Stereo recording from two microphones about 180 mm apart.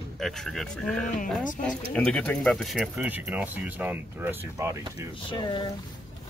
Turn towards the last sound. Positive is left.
turn(degrees=25)  # may be behind; listen again after turning